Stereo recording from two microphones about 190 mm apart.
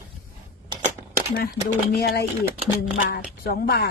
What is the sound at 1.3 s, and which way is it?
Speech, 55° left (ahead or behind).